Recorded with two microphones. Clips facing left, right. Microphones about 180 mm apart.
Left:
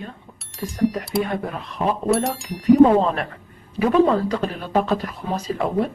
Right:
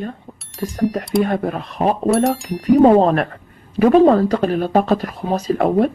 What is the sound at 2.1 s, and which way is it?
Speech, centre (ahead or behind).